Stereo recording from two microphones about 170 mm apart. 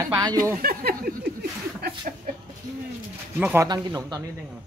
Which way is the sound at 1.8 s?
65° right (ahead or behind).